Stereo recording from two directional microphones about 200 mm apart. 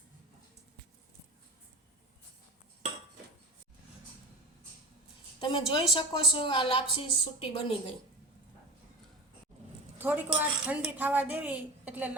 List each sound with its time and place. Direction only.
5.4 s a woman's voice: 25° left (ahead or behind)
10.0 s a woman's voice: 10° right (ahead or behind)